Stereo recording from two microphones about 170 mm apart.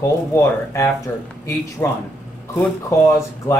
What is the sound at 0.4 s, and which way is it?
Speech, 15° left (ahead or behind).